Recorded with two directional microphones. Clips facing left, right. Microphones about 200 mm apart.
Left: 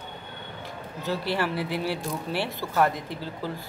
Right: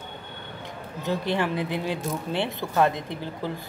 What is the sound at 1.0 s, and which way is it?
Speech, 20° right (ahead or behind).